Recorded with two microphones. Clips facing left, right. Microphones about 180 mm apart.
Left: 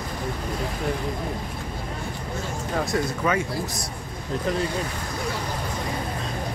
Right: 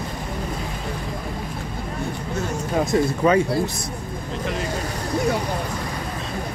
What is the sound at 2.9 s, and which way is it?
Speech, 30° right (ahead or behind).